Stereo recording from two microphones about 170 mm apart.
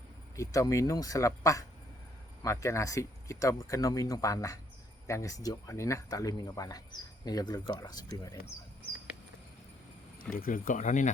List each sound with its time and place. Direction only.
0.3 s speech: 20° left (ahead or behind)
10.2 s speech: 55° left (ahead or behind)